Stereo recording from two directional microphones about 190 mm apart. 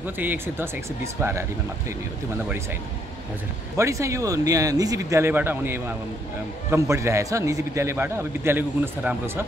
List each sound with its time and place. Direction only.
0.0 s a man's voice: 10° right (ahead or behind)
3.7 s a man's voice: 15° right (ahead or behind)